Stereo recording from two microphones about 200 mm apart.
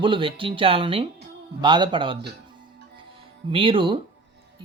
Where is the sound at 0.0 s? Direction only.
25° right (ahead or behind).